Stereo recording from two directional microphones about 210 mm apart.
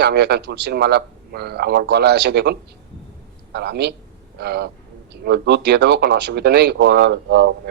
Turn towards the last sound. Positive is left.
turn(degrees=-50)  # may be behind; listen again after turning